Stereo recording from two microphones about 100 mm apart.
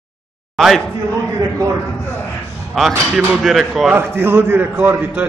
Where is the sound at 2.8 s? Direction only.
5° left (ahead or behind).